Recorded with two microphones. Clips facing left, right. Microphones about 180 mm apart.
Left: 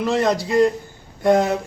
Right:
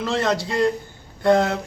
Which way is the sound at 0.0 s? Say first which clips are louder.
Left 3 dB; 15° left (ahead or behind).